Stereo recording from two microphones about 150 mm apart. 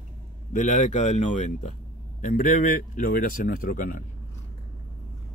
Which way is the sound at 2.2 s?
65° left (ahead or behind).